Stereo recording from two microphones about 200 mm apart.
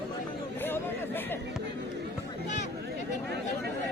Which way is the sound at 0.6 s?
10° left (ahead or behind).